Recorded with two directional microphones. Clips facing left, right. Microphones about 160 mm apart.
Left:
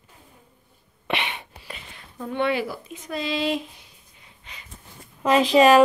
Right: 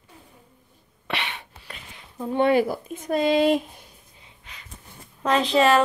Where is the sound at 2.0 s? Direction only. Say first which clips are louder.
Right 4 dB; 20° right (ahead or behind).